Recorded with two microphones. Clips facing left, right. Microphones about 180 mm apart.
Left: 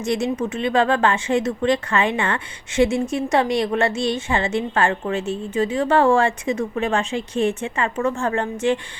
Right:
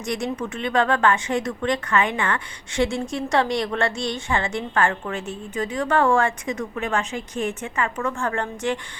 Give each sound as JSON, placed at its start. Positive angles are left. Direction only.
{"t": 0.0, "sound": "speech", "side_deg": 25}